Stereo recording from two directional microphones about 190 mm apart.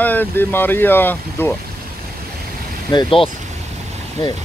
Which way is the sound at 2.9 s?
25° left (ahead or behind).